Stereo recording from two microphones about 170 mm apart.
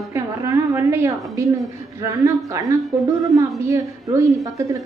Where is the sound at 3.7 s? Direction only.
20° right (ahead or behind).